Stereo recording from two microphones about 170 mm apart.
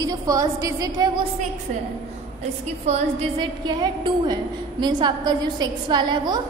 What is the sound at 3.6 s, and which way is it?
A woman's voice, 25° right (ahead or behind).